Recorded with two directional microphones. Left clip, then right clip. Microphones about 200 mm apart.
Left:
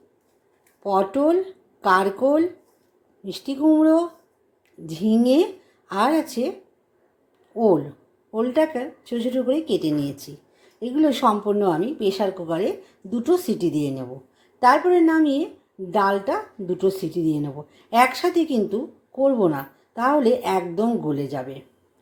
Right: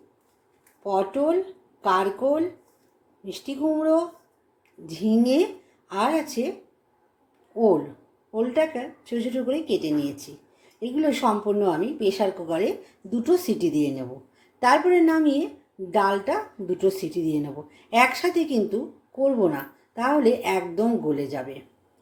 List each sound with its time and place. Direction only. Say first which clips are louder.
0.8 s speech: left 3 dB; 25° left (ahead or behind)
7.5 s a woman's voice: left 2 dB; 20° left (ahead or behind)